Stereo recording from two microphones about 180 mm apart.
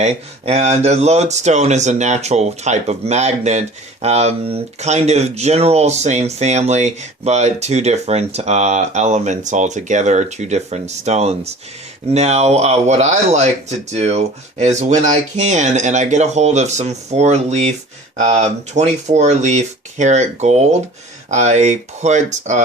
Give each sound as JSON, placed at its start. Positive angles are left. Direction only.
{"t": 0.0, "sound": "speech", "side_deg": -35}